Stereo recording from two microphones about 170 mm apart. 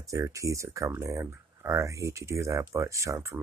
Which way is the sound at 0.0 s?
20° right (ahead or behind).